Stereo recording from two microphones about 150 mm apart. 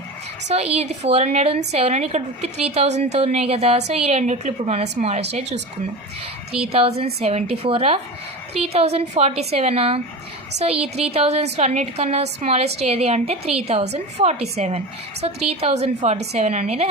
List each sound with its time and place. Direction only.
0.4 s a woman's voice: 45° right (ahead or behind)